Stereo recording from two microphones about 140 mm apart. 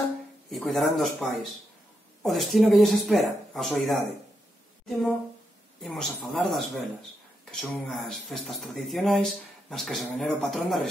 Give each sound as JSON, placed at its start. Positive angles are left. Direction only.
{"t": 0.5, "sound": "speech", "side_deg": 0}
{"t": 5.8, "sound": "speech", "side_deg": 5}